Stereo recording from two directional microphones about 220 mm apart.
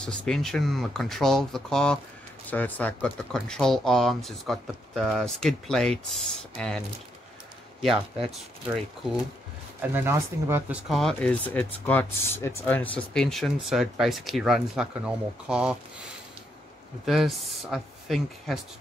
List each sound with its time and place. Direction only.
0.0 s speech: 5° left (ahead or behind)
7.8 s speech: centre (ahead or behind)
17.0 s speech: centre (ahead or behind)